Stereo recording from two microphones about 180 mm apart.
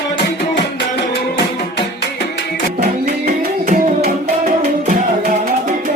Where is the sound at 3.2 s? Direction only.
60° right (ahead or behind).